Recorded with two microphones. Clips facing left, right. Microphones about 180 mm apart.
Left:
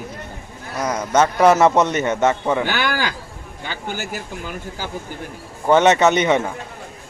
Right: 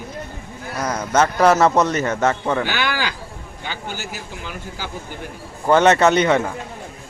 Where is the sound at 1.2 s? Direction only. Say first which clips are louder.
Left 1 dB; 10° left (ahead or behind).